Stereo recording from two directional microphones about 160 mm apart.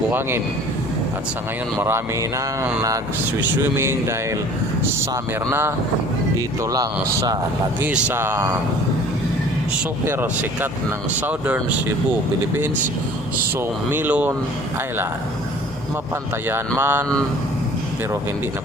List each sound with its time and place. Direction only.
0.1 s speech: 15° right (ahead or behind)
1.8 s speech: 15° right (ahead or behind)
5.5 s speech: 15° right (ahead or behind)
7.8 s speech: 10° right (ahead or behind)
10.0 s speech: 15° right (ahead or behind)
13.6 s speech: 10° right (ahead or behind)
16.5 s speech: 15° right (ahead or behind)